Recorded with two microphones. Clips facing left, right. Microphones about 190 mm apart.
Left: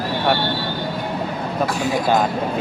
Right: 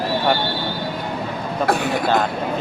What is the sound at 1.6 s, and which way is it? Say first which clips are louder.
Speech: right 2 dB; 60° right (ahead or behind).